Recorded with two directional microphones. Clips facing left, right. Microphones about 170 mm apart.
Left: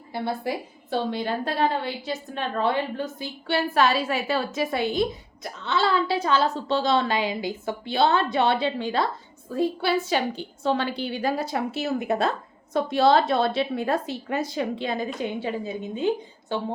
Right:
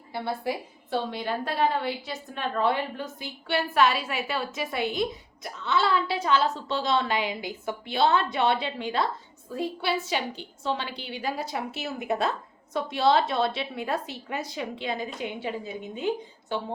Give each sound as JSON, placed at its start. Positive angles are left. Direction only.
{"t": 0.1, "sound": "a woman's voice", "side_deg": 25}